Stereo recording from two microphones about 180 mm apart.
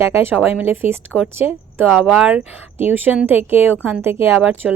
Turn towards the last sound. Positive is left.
turn(degrees=-5)  # may be behind; listen again after turning